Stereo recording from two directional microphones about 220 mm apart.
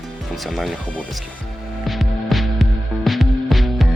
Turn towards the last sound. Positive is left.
turn(degrees=0)  # may be behind; listen again after turning